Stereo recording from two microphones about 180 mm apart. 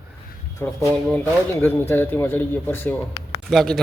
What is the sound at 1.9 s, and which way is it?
A man's voice, 10° left (ahead or behind).